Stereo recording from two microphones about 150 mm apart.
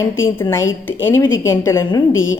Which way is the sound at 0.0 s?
15° left (ahead or behind).